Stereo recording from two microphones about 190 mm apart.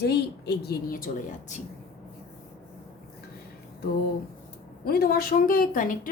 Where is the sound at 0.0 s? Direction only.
60° left (ahead or behind); by 1.6 s 40° left (ahead or behind).